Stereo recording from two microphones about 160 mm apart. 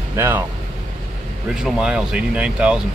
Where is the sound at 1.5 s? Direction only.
5° right (ahead or behind).